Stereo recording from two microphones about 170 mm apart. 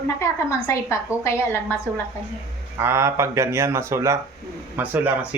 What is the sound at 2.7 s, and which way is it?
A man's voice, 15° right (ahead or behind).